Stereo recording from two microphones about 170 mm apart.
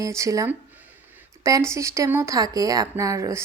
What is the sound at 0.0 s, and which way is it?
A woman's voice, 20° right (ahead or behind).